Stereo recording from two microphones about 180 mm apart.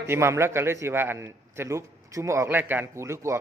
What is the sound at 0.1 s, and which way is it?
A man's voice, 15° right (ahead or behind).